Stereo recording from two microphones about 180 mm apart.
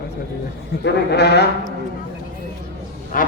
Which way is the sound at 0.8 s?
65° left (ahead or behind).